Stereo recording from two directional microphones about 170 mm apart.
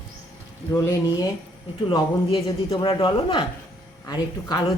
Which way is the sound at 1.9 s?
30° left (ahead or behind).